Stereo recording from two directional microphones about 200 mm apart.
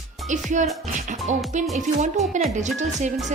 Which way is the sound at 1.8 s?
35° right (ahead or behind).